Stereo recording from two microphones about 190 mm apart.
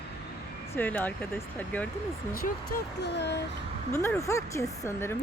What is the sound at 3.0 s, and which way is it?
Speech, 65° left (ahead or behind).